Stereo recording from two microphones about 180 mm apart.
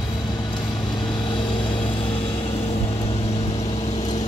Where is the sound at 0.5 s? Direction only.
25° left (ahead or behind).